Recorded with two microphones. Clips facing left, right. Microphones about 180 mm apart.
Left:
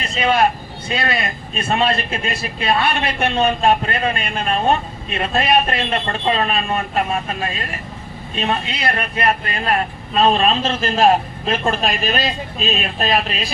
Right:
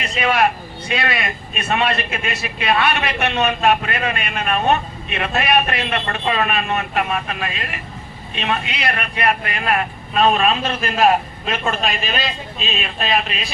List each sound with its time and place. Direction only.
0.0 s a man's voice: 30° left (ahead or behind)